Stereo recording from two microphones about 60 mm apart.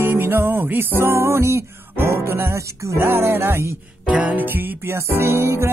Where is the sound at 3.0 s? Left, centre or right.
Right.